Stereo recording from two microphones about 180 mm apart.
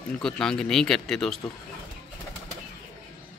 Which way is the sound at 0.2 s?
5° left (ahead or behind).